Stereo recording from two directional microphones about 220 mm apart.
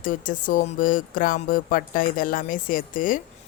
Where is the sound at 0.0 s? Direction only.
35° left (ahead or behind).